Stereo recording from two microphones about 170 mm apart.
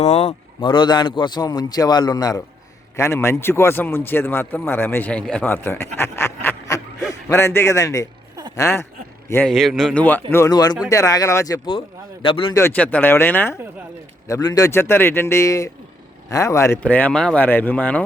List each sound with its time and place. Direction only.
0.0 s a man's voice: 40° left (ahead or behind); by 8.9 s 15° left (ahead or behind)
9.3 s a man's voice: 5° left (ahead or behind); by 12.5 s 30° left (ahead or behind)
12.5 s a man's voice: 10° left (ahead or behind)